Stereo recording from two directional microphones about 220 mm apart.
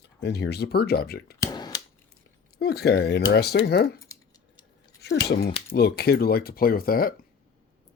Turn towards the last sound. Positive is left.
turn(degrees=40)  # may be behind; listen again after turning